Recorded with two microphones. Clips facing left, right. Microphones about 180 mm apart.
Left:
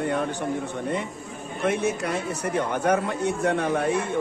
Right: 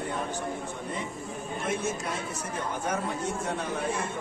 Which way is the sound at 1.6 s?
65° left (ahead or behind).